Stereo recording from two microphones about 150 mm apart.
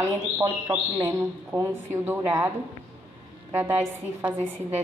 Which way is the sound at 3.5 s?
15° right (ahead or behind).